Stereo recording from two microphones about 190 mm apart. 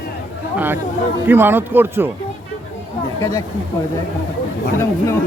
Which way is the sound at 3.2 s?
15° left (ahead or behind).